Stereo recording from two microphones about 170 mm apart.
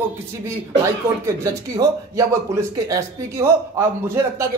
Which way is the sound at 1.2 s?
20° right (ahead or behind).